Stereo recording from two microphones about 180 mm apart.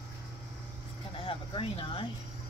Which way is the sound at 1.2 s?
30° left (ahead or behind).